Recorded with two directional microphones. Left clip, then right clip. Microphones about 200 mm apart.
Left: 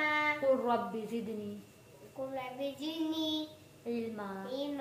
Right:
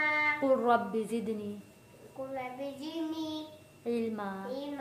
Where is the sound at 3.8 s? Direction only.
60° right (ahead or behind).